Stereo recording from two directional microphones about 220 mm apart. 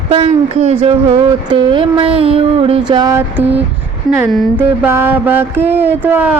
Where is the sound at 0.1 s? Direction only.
30° right (ahead or behind).